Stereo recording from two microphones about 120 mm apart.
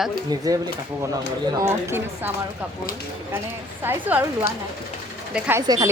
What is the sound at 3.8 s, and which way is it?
Speech, 15° right (ahead or behind).